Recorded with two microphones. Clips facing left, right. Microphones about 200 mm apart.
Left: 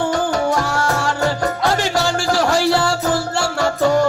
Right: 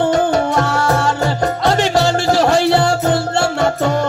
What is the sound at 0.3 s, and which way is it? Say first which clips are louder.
Music: right 3 dB; 25° right (ahead or behind).